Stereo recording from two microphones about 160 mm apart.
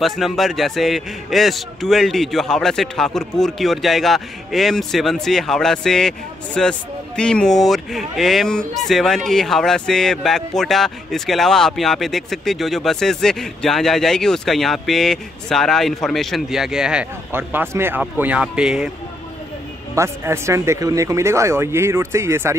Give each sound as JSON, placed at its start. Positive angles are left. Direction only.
{"t": 0.0, "sound": "a man's voice", "side_deg": 0}
{"t": 20.0, "sound": "speech", "side_deg": -15}